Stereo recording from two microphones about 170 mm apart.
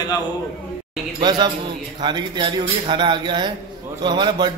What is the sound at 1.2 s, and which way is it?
A man's voice, 25° right (ahead or behind).